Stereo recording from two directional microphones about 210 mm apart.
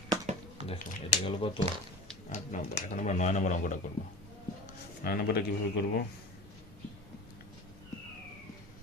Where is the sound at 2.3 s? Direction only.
35° left (ahead or behind).